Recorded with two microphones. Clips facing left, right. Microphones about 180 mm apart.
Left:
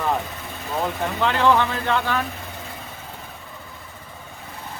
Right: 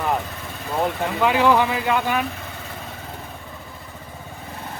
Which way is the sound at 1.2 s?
10° right (ahead or behind).